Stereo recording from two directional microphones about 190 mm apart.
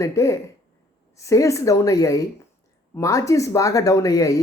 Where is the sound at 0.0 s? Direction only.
15° left (ahead or behind).